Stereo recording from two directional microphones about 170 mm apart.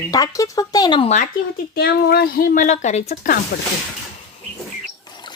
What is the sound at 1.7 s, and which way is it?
Speech, 65° left (ahead or behind).